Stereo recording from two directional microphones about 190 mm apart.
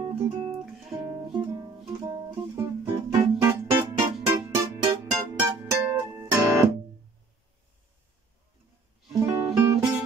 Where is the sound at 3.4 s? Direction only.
15° right (ahead or behind).